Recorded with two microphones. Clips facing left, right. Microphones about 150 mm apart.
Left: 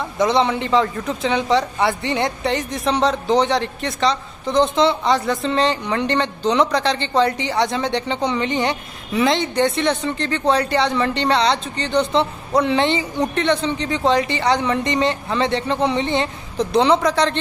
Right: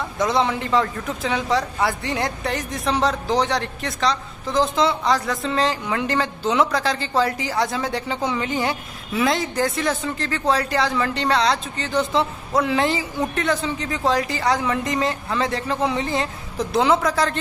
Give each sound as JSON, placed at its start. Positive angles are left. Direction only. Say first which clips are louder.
{"t": 0.0, "sound": "a woman's voice", "louder": "left 3 dB", "side_deg": 0}